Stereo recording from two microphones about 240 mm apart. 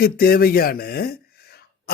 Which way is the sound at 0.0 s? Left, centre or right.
Left.